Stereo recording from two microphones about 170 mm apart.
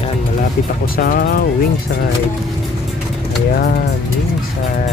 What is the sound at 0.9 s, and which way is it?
Speech, 60° left (ahead or behind).